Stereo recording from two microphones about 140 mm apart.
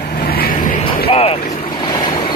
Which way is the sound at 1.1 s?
45° left (ahead or behind).